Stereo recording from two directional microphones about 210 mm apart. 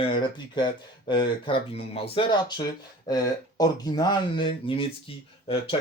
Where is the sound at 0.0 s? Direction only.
20° left (ahead or behind).